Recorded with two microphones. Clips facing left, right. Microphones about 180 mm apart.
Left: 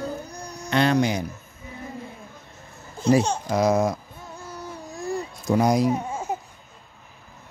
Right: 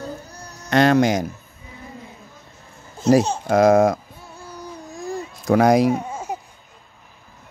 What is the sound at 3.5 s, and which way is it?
Speech, 50° right (ahead or behind).